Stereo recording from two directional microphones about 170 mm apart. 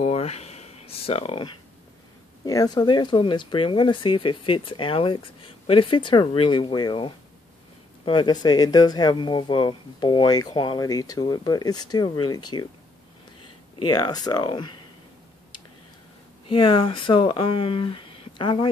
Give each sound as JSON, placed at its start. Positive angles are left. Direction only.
{"t": 0.0, "sound": "a sound", "side_deg": 35}
{"t": 2.4, "sound": "speech", "side_deg": 20}
{"t": 13.8, "sound": "speech", "side_deg": 25}
{"t": 16.4, "sound": "speech", "side_deg": 30}